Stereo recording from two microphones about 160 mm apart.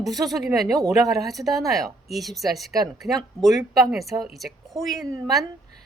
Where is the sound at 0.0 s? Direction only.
Centre (ahead or behind).